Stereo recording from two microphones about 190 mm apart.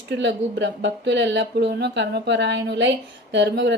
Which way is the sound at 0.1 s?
65° right (ahead or behind).